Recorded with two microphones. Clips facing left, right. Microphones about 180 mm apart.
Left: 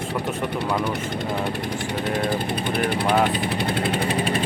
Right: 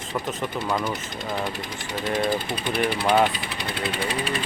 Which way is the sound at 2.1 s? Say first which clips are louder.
Right 1 dB; 60° left (ahead or behind).